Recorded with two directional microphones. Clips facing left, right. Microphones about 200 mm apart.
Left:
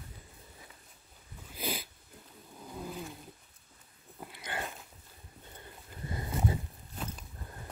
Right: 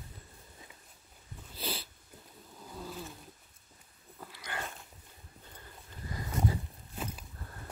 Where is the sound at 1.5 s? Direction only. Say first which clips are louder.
Left 2 dB; 10° left (ahead or behind).